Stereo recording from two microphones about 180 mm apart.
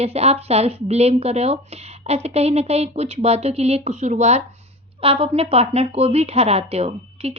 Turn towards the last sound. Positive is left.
turn(degrees=-35)  # may be behind; listen again after turning